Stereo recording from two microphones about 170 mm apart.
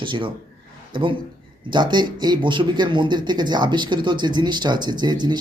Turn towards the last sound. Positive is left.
turn(degrees=-25)  # may be behind; listen again after turning